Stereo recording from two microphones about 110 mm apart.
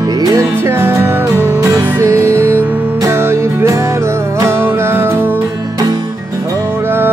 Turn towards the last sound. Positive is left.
turn(degrees=-20)  # may be behind; listen again after turning